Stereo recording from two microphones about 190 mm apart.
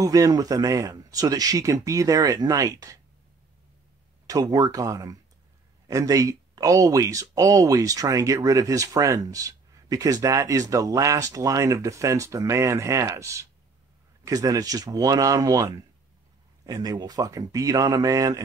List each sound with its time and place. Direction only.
0.0 s speech: 20° right (ahead or behind)
4.3 s speech: 20° right (ahead or behind)